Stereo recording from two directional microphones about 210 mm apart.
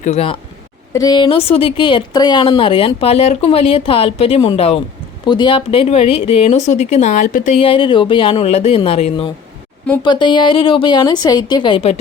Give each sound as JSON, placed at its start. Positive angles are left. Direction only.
{"t": 0.0, "sound": "speech", "side_deg": 30}
{"t": 0.9, "sound": "speech", "side_deg": 20}